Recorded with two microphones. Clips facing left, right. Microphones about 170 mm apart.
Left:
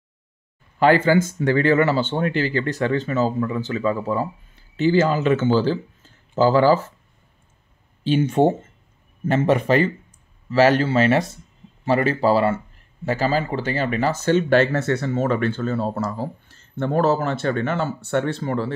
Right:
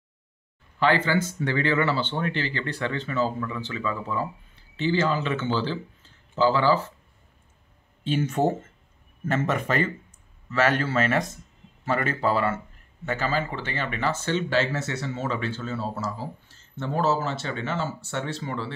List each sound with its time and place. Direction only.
0.7 s speech: 45° left (ahead or behind)
8.2 s speech: 30° left (ahead or behind); by 18.7 s 50° left (ahead or behind)